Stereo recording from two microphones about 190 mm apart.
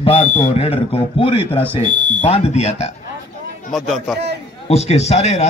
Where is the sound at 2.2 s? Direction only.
30° left (ahead or behind).